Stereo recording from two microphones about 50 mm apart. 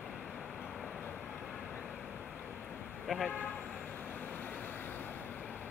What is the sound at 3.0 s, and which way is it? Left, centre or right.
Speech, centre.